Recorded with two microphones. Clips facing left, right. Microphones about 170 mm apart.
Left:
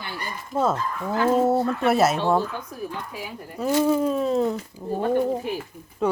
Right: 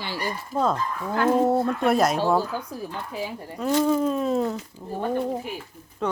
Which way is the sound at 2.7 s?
30° right (ahead or behind).